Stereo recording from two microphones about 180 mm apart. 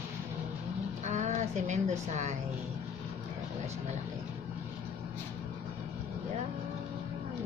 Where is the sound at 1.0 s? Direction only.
40° right (ahead or behind).